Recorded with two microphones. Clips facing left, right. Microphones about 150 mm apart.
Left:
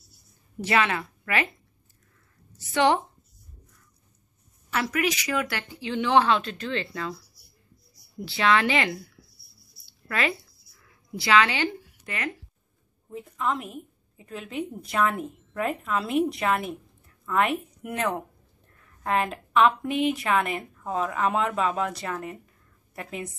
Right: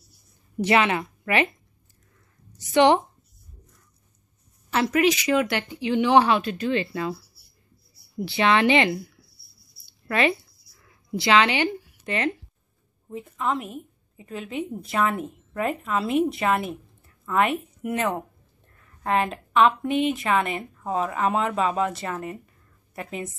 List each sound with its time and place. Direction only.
0.6 s a woman's voice: 20° right (ahead or behind)
2.6 s speech: 20° right (ahead or behind)
4.6 s speech: 25° right (ahead or behind)
8.3 s speech: 20° right (ahead or behind)
9.8 s a sound: 20° right (ahead or behind)
11.1 s a woman's voice: 25° right (ahead or behind)
13.1 s a woman's voice: centre (ahead or behind)